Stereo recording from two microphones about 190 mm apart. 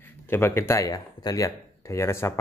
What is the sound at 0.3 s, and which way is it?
Speech, 15° left (ahead or behind).